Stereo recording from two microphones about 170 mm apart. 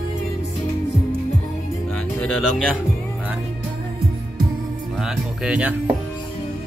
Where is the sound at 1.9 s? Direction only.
5° left (ahead or behind).